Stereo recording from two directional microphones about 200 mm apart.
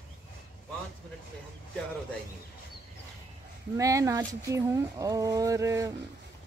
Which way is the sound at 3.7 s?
15° right (ahead or behind).